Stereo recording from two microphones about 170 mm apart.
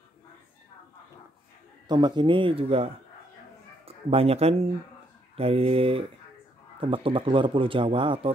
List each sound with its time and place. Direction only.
1.9 s speech: 25° right (ahead or behind)